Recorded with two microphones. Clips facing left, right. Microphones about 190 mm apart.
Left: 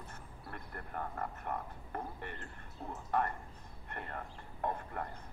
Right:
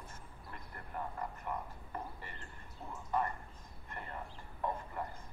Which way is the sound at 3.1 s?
65° left (ahead or behind).